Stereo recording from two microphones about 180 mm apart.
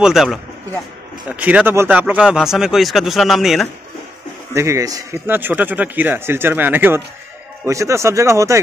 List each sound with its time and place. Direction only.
0.0 s speech: centre (ahead or behind)
4.6 s speech: 15° right (ahead or behind)